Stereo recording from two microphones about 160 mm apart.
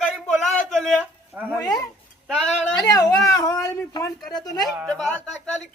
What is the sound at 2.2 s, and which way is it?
Speech, 5° left (ahead or behind).